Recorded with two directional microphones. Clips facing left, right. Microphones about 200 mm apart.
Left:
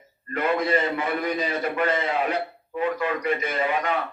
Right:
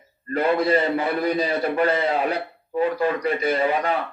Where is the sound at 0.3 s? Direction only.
35° right (ahead or behind).